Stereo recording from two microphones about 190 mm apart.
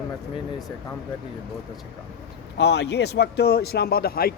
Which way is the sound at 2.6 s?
60° left (ahead or behind).